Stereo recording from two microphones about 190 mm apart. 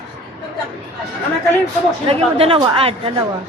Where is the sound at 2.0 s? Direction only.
30° right (ahead or behind).